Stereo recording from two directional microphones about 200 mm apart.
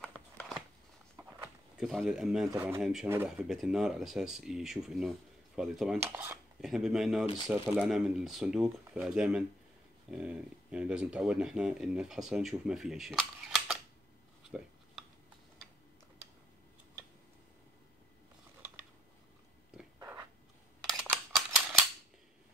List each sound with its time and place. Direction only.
1.8 s speech: centre (ahead or behind)
2.5 s speech: 15° right (ahead or behind)
2.8 s speech: centre (ahead or behind)
20.0 s a sound: 15° right (ahead or behind)
20.9 s camera: 5° right (ahead or behind)